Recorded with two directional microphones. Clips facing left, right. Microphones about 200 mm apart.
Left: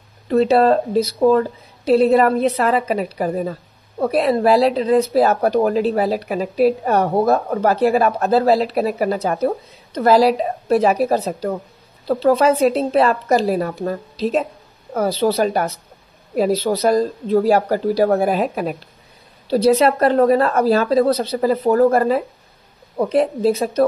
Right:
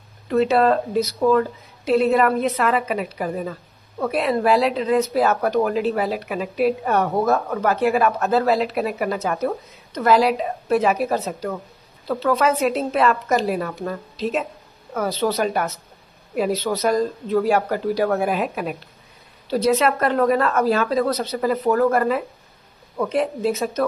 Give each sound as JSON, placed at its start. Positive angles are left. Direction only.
{"t": 0.3, "sound": "speech", "side_deg": 35}